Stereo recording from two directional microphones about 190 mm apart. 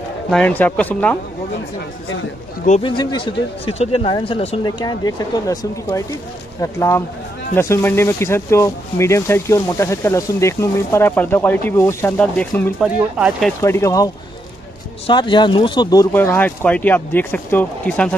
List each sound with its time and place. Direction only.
0.3 s speech: 5° left (ahead or behind)
2.8 s speech: 25° left (ahead or behind); by 12.7 s 5° left (ahead or behind)
12.8 s speech: 5° right (ahead or behind)
13.6 s speech: 15° left (ahead or behind)